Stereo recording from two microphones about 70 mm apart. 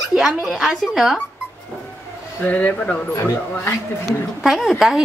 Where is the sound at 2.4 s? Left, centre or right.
Left.